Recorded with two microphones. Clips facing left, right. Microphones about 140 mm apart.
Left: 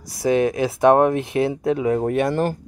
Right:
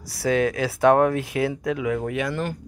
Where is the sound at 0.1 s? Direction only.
20° left (ahead or behind).